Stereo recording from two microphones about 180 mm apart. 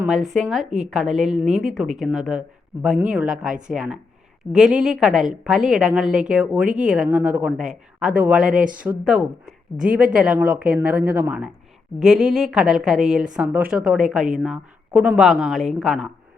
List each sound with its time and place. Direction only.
0.0 s a woman's voice: centre (ahead or behind)
0.6 s a woman's voice: 40° right (ahead or behind)
1.1 s a woman's voice: centre (ahead or behind)